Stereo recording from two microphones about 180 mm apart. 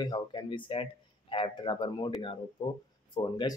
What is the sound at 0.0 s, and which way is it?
Speech, 25° left (ahead or behind).